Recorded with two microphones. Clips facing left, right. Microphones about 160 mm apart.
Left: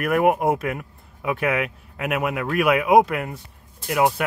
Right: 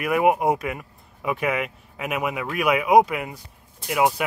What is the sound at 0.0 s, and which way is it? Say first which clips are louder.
A man's voice: left 1 dB; centre (ahead or behind).